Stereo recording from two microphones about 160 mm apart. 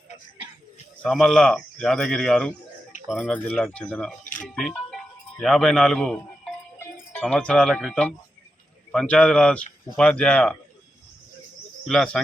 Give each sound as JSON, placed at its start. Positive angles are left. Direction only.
{"t": 1.0, "sound": "speech", "side_deg": 0}
{"t": 4.2, "sound": "music", "side_deg": 55}
{"t": 4.4, "sound": "speech", "side_deg": 5}
{"t": 11.9, "sound": "speech", "side_deg": 5}